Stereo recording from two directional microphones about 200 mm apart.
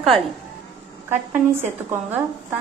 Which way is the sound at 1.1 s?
10° right (ahead or behind).